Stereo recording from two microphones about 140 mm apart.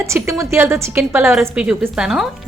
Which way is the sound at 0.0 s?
20° right (ahead or behind).